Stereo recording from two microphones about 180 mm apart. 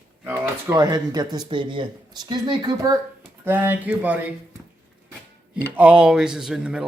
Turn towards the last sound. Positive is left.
turn(degrees=-5)  # may be behind; listen again after turning